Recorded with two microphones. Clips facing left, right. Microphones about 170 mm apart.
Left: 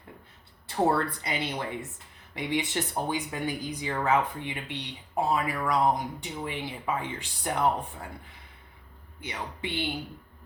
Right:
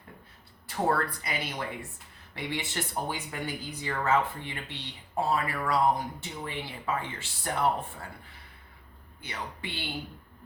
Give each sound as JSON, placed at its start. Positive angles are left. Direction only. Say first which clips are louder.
{"t": 0.9, "sound": "speech", "louder": "even", "side_deg": 25}
{"t": 9.2, "sound": "speech", "louder": "left 3 dB", "side_deg": 20}